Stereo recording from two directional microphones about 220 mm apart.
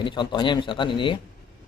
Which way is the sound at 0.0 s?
20° left (ahead or behind).